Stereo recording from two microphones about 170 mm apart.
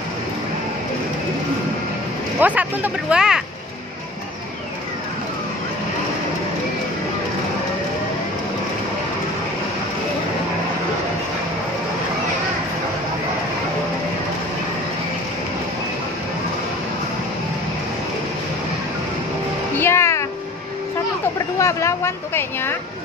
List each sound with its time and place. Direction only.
2.4 s speech: 10° right (ahead or behind)
19.8 s music: 15° left (ahead or behind)
21.5 s a sound: 15° left (ahead or behind)